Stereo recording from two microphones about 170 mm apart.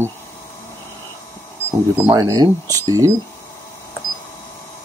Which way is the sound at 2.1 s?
20° right (ahead or behind).